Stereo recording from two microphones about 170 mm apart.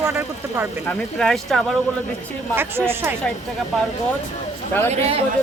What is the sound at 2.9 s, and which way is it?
Speech, 15° right (ahead or behind).